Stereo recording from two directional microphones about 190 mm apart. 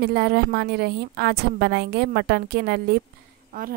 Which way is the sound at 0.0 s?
55° right (ahead or behind).